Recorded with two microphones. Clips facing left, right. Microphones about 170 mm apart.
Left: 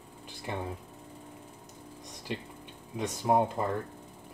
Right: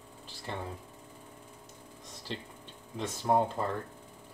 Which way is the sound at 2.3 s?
10° left (ahead or behind).